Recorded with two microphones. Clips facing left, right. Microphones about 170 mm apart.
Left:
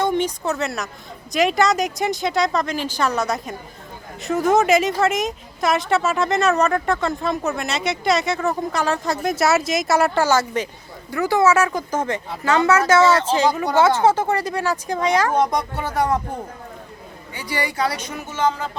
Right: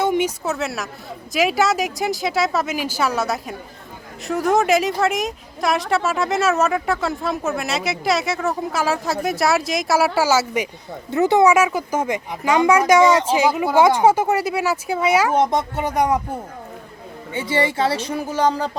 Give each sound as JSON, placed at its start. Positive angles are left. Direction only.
{"t": 0.0, "sound": "a woman's voice", "side_deg": -10}
{"t": 11.1, "sound": "a woman's voice", "side_deg": -20}
{"t": 15.4, "sound": "speech", "side_deg": -20}
{"t": 17.3, "sound": "speech", "side_deg": -25}